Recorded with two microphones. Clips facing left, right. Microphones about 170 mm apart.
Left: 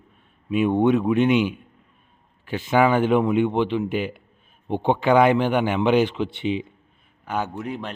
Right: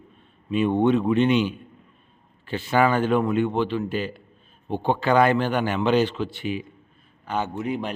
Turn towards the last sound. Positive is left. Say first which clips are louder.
# right 3 dB
turn(degrees=-5)  # may be behind; listen again after turning